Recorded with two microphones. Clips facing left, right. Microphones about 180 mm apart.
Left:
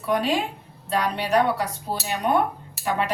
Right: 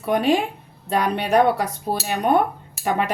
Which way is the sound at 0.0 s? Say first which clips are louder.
Right 4 dB; 55° right (ahead or behind).